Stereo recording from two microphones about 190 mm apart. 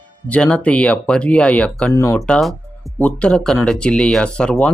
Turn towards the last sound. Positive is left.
turn(degrees=5)  # may be behind; listen again after turning